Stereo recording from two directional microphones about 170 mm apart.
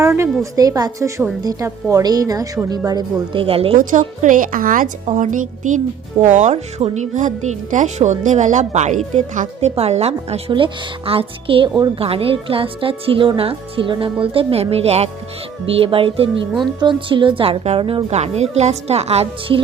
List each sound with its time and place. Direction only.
0.0 s a woman's voice: 15° right (ahead or behind); by 3.8 s 35° right (ahead or behind)
3.8 s a woman's voice: 50° right (ahead or behind)